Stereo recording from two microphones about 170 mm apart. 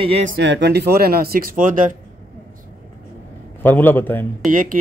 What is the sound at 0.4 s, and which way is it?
Speech, 90° right.